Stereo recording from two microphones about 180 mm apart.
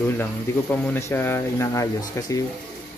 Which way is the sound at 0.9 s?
15° left (ahead or behind).